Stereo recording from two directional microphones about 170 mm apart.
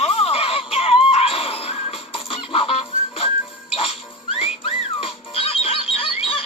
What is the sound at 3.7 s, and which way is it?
Music, 35° left (ahead or behind).